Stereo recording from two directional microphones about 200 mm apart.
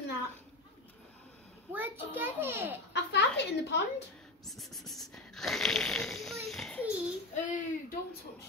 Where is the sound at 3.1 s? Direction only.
60° left (ahead or behind).